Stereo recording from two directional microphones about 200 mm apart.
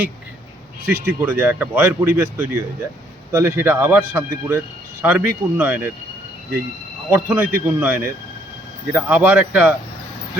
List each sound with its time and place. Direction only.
1.2 s speech: 10° right (ahead or behind)
7.1 s speech: 15° right (ahead or behind)